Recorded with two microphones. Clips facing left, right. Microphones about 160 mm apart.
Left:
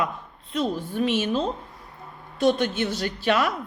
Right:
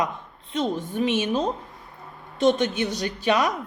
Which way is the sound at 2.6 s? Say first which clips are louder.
Even; 15° right (ahead or behind).